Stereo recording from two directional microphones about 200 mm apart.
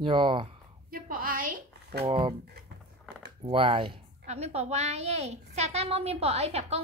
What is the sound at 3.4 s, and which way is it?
A woman's voice, 25° right (ahead or behind).